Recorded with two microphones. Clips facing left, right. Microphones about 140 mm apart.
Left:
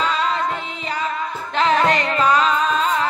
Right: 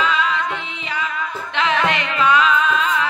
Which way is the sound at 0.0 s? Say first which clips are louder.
Even; 40° left (ahead or behind).